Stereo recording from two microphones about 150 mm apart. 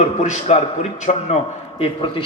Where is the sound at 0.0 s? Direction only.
50° left (ahead or behind).